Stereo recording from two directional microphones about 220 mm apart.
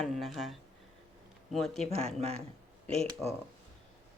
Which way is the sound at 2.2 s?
25° right (ahead or behind).